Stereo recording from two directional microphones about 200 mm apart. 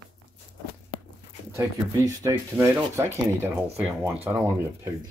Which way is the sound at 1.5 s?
15° right (ahead or behind).